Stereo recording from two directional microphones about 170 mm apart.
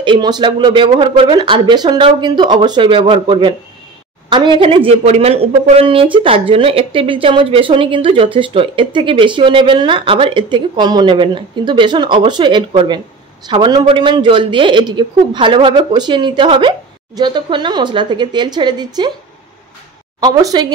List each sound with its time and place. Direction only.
0.0 s speech: 25° right (ahead or behind)
20.2 s speech: 25° right (ahead or behind)